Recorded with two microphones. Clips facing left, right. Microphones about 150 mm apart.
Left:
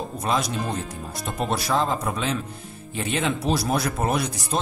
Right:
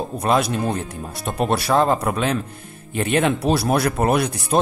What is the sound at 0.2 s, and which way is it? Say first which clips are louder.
Speech: right 6 dB; 60° right (ahead or behind).